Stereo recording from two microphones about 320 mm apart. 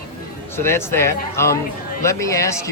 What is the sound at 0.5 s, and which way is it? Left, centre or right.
A man's voice, centre.